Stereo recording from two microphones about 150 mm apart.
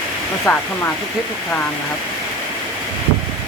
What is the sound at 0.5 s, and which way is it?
Speech, 15° left (ahead or behind).